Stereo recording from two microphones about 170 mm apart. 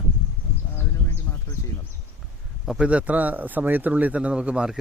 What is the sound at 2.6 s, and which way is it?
Speech, 5° right (ahead or behind).